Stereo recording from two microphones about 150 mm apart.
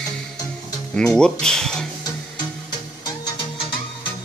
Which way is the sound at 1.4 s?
5° left (ahead or behind).